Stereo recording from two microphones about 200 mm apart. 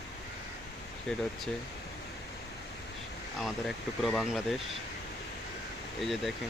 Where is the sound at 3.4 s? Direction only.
Centre (ahead or behind).